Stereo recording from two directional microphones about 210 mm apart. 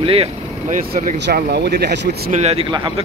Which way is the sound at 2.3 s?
30° right (ahead or behind).